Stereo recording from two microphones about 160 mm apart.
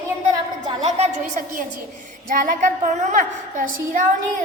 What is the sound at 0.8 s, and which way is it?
A woman's voice, 40° right (ahead or behind).